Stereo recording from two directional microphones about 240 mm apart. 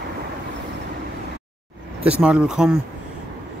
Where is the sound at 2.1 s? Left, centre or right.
Centre.